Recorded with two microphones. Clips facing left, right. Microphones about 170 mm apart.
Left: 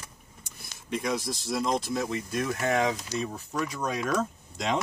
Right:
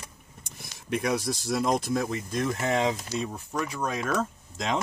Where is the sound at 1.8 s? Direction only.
50° right (ahead or behind).